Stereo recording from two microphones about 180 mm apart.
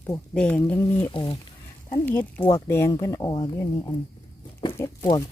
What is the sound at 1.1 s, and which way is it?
Speech, 30° left (ahead or behind).